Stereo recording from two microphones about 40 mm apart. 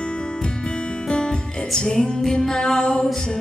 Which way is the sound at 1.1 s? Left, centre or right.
Left.